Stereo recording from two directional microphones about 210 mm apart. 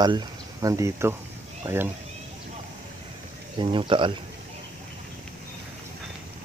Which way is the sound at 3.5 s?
25° right (ahead or behind).